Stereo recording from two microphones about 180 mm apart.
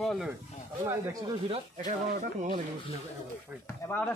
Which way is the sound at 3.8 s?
10° left (ahead or behind).